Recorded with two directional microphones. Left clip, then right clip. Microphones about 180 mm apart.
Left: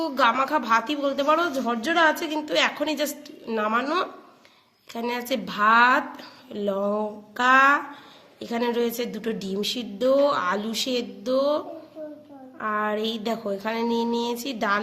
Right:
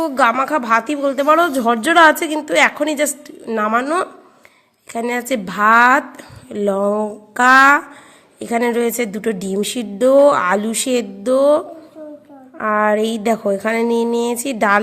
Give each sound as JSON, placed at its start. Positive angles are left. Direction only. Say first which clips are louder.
{"t": 0.0, "sound": "a man's voice", "louder": "right 6 dB", "side_deg": -40}